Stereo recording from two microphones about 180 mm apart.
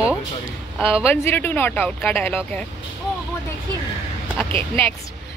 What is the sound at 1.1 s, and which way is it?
A woman's voice, 10° left (ahead or behind).